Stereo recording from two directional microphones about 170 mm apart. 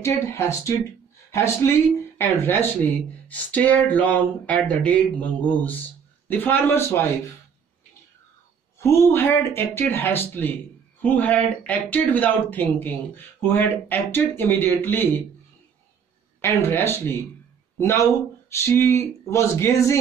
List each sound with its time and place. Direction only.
0.0 s speech: 15° left (ahead or behind)
8.7 s speech: 15° left (ahead or behind)
16.3 s speech: 15° left (ahead or behind)